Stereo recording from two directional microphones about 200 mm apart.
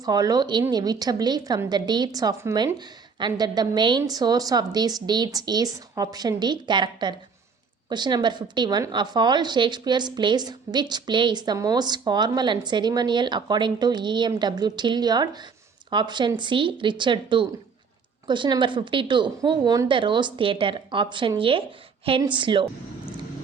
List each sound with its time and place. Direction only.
0.0 s a woman's voice: 20° right (ahead or behind)